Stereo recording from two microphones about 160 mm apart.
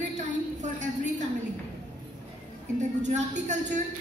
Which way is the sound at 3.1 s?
50° right (ahead or behind).